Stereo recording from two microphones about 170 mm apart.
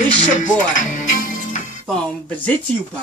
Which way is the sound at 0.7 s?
50° left (ahead or behind).